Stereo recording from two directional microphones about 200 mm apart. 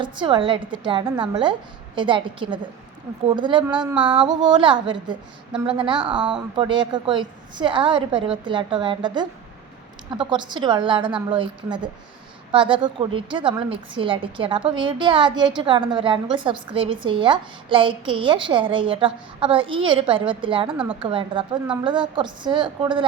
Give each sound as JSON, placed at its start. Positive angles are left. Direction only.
{"t": 0.0, "sound": "a woman's voice", "side_deg": -25}
{"t": 6.1, "sound": "a woman's voice", "side_deg": -5}
{"t": 6.6, "sound": "a woman's voice", "side_deg": -25}
{"t": 10.2, "sound": "a woman's voice", "side_deg": -25}